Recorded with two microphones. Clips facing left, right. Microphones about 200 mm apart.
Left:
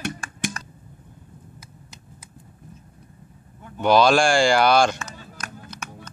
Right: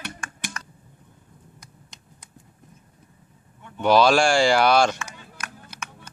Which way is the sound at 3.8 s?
Centre (ahead or behind).